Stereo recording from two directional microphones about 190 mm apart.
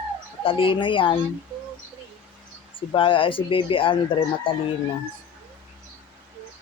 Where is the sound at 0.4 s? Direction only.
25° left (ahead or behind).